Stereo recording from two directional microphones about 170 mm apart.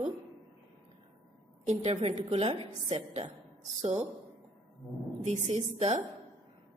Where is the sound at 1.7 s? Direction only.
35° right (ahead or behind).